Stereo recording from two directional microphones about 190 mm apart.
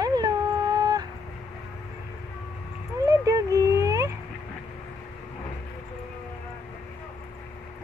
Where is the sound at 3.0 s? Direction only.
15° right (ahead or behind).